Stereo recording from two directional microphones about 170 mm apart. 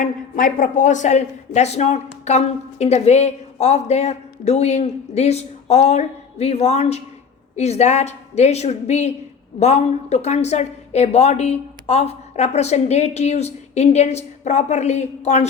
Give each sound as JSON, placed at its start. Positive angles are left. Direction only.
{"t": 0.0, "sound": "a woman's voice", "side_deg": 55}